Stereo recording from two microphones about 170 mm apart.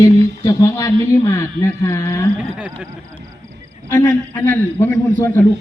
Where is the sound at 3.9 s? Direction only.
15° left (ahead or behind).